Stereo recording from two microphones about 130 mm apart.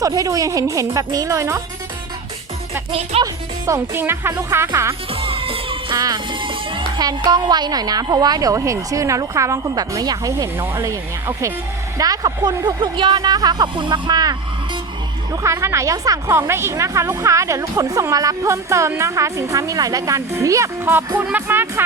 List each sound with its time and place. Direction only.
0.0 s a woman's voice: 25° right (ahead or behind)
2.9 s speech: 50° right (ahead or behind)
3.7 s a woman's voice: 20° right (ahead or behind)
5.1 s music: 45° right (ahead or behind)
7.3 s a woman's voice: 35° right (ahead or behind); by 21.8 s 15° right (ahead or behind)